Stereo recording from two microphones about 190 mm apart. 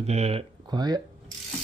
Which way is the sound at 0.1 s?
35° right (ahead or behind).